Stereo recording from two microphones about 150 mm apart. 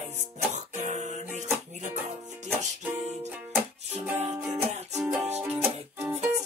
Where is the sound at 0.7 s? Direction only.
50° right (ahead or behind).